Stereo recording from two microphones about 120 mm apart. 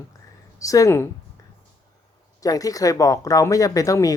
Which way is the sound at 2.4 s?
30° left (ahead or behind).